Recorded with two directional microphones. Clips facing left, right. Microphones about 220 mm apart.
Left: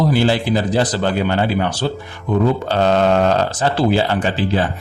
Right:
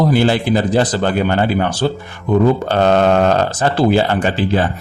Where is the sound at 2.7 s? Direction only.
55° right (ahead or behind).